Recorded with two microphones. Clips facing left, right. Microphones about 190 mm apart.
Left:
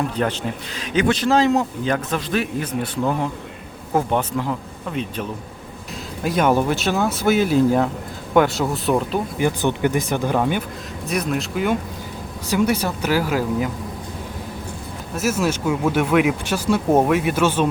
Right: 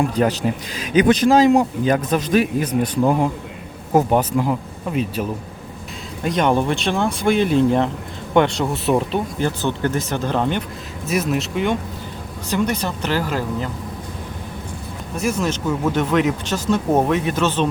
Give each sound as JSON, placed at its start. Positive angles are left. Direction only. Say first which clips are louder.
{"t": 0.2, "sound": "a man's voice", "louder": "right 4 dB", "side_deg": -10}
{"t": 6.2, "sound": "speech", "louder": "even", "side_deg": 5}
{"t": 9.4, "sound": "speech", "louder": "left 4 dB", "side_deg": 15}
{"t": 11.0, "sound": "speech", "louder": "right 2 dB", "side_deg": -5}
{"t": 15.1, "sound": "speech", "louder": "left 1 dB", "side_deg": 5}